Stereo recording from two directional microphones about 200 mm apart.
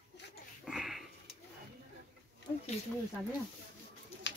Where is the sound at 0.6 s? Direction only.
Centre (ahead or behind).